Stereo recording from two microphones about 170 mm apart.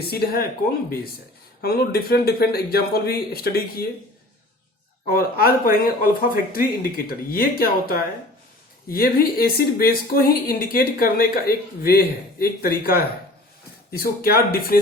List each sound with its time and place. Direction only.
0.0 s speech: 65° left (ahead or behind)
1.6 s speech: 65° left (ahead or behind)
5.0 s speech: 60° left (ahead or behind)